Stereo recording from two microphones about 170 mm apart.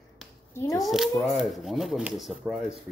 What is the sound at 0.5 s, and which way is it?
Speech, 20° left (ahead or behind).